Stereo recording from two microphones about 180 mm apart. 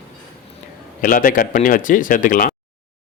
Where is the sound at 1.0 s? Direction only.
50° left (ahead or behind).